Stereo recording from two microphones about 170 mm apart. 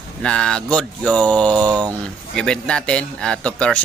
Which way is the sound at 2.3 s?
5° left (ahead or behind).